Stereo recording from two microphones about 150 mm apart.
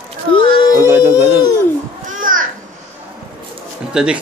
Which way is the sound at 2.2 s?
65° right (ahead or behind).